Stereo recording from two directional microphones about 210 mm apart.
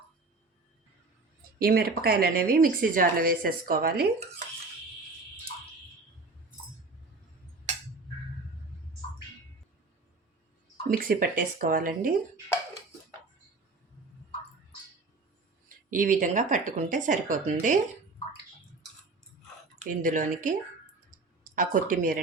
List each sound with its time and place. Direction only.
1.5 s speech: 45° right (ahead or behind)
10.8 s speech: 45° right (ahead or behind)
15.9 s speech: 40° right (ahead or behind)
19.9 s speech: 40° right (ahead or behind)